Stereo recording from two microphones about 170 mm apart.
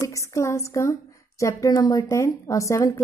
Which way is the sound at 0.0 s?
15° left (ahead or behind).